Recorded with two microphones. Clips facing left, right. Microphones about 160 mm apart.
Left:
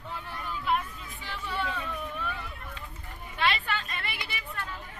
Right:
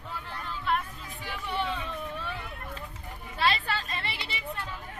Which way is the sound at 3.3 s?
35° right (ahead or behind).